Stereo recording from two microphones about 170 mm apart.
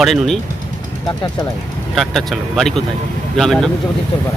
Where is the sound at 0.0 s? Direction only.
Centre (ahead or behind).